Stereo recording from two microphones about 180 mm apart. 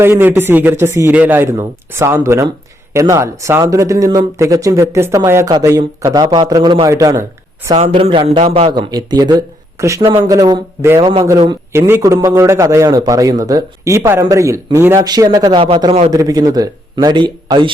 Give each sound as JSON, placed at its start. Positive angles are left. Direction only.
{"t": 0.0, "sound": "a man's voice", "side_deg": -10}
{"t": 7.8, "sound": "a man's voice", "side_deg": -35}